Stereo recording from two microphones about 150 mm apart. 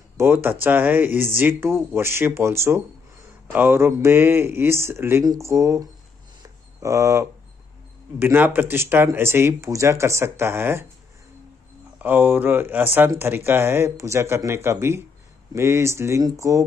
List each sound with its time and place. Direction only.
0.2 s speech: 15° right (ahead or behind)
6.4 s a sound: 20° right (ahead or behind)
8.2 s speech: 15° right (ahead or behind)
12.0 s speech: 15° right (ahead or behind)